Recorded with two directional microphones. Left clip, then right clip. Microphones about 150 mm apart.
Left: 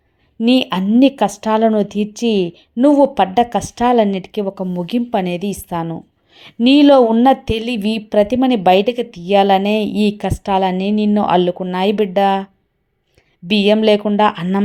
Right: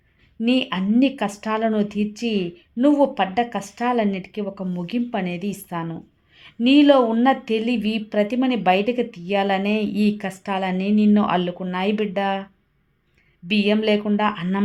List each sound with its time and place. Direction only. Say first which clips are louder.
0.3 s speech: left 7 dB; 35° left (ahead or behind)
13.5 s speech: left 7 dB; 35° left (ahead or behind)